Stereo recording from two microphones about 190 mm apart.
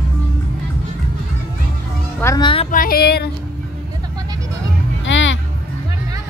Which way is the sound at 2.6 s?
50° left (ahead or behind).